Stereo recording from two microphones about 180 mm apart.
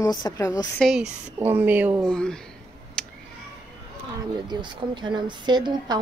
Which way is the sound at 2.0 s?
5° left (ahead or behind).